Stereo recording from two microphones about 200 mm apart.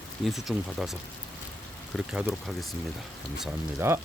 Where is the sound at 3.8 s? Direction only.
10° right (ahead or behind).